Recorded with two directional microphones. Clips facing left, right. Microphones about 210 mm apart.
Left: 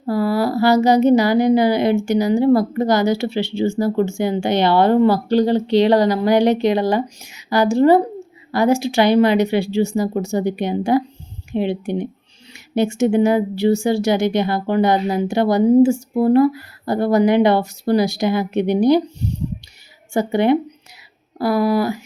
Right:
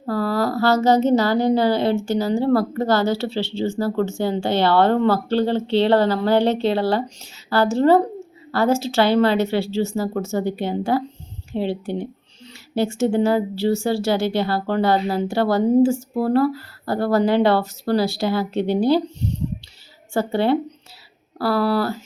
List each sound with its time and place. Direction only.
0.0 s a woman's voice: 10° left (ahead or behind)